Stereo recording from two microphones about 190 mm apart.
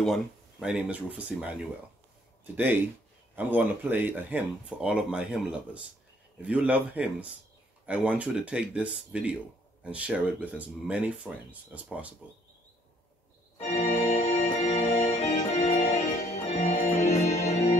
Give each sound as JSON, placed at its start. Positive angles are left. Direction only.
{"t": 0.0, "sound": "speech", "side_deg": 0}
{"t": 13.8, "sound": "music", "side_deg": 35}